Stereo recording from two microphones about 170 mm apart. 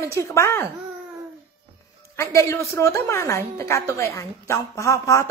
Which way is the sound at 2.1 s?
15° left (ahead or behind).